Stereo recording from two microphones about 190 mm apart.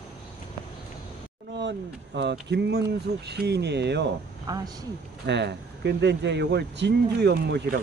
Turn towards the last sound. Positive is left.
turn(degrees=-60)  # may be behind; listen again after turning